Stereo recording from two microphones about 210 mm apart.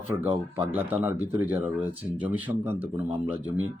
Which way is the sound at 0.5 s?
10° right (ahead or behind).